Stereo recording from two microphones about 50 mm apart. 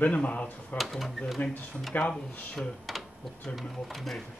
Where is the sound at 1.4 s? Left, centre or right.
Left.